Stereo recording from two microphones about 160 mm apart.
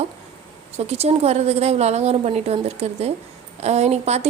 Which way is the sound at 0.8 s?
40° right (ahead or behind).